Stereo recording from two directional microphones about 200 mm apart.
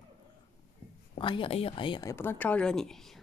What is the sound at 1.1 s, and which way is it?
Speech, 25° left (ahead or behind).